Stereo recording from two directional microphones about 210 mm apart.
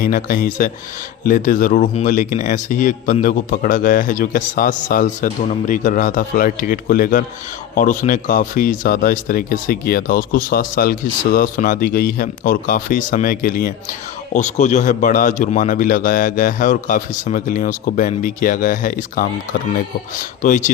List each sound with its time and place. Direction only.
0.0 s speech: 40° left (ahead or behind)